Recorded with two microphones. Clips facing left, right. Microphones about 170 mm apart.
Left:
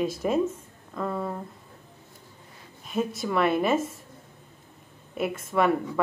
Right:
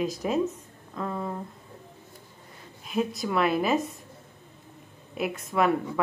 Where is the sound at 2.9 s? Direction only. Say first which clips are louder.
Even; centre (ahead or behind).